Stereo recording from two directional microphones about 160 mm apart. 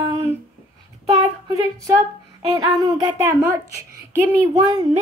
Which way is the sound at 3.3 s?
15° right (ahead or behind).